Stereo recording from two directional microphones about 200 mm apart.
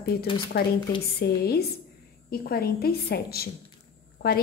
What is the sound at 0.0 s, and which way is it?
A woman's voice, 50° left (ahead or behind).